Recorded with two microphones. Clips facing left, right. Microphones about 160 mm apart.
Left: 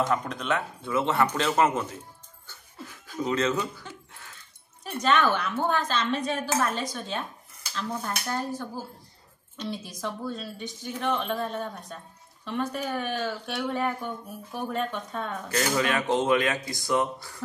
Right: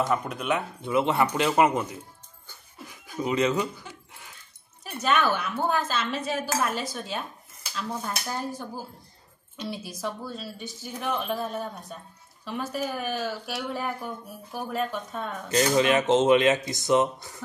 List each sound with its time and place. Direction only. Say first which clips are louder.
0.0 s speech: even; 10° right (ahead or behind)
2.4 s dog: left 2 dB; 15° right (ahead or behind)
4.9 s speech: left 1 dB; 10° right (ahead or behind)
15.4 s speech: right 5 dB; 20° right (ahead or behind)